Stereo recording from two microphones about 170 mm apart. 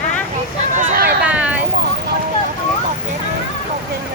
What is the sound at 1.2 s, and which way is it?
Vehicle, 10° right (ahead or behind).